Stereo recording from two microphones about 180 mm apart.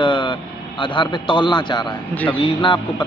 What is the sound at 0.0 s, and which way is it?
A man's voice, 25° left (ahead or behind).